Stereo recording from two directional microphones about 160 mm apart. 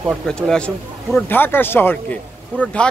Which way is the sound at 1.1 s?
10° left (ahead or behind).